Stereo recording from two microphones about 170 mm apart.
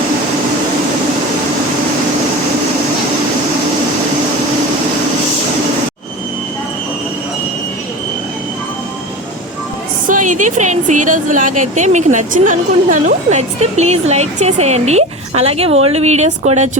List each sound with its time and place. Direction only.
10.1 s a woman's voice: 50° right (ahead or behind)